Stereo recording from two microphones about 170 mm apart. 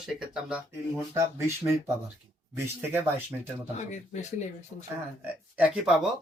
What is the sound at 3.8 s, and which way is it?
Speech, 45° left (ahead or behind).